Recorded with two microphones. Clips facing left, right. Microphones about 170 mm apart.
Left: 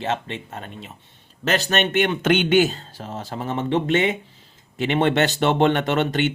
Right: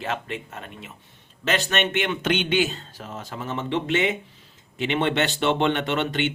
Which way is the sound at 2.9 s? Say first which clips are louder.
Left 4 dB; 30° left (ahead or behind).